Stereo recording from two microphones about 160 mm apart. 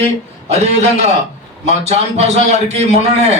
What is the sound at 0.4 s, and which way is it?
A man's voice, 40° right (ahead or behind).